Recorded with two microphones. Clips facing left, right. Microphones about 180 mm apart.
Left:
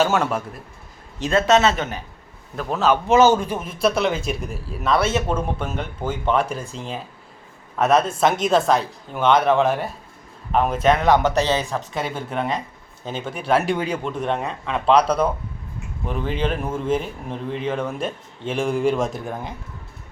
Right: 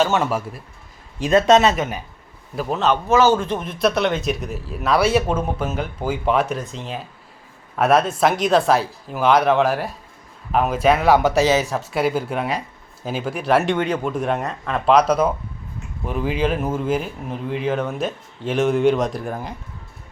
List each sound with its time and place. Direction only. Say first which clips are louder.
0.0 s a man's voice: right 1 dB; centre (ahead or behind)
1.2 s a man's voice: right 3 dB; 20° right (ahead or behind); by 3.0 s centre (ahead or behind)
3.1 s a man's voice: left 1 dB; 20° left (ahead or behind)
14.0 s a man's voice: right 2 dB; 5° right (ahead or behind)